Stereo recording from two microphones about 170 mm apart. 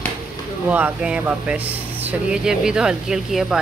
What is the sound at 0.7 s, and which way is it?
Speech, 10° right (ahead or behind).